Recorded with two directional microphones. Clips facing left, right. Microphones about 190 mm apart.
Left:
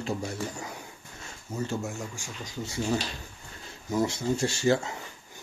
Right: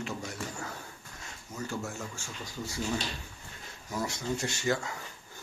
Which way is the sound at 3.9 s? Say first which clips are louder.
Left 6 dB; 25° left (ahead or behind).